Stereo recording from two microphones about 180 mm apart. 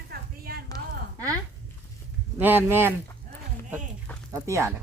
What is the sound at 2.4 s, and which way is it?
Speech, 10° right (ahead or behind).